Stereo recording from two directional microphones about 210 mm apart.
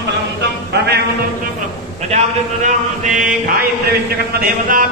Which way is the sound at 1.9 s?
30° right (ahead or behind).